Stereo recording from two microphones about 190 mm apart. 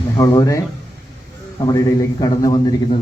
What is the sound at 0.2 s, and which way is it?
Speech, 20° left (ahead or behind).